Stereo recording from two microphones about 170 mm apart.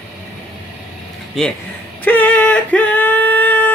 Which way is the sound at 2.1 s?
10° left (ahead or behind).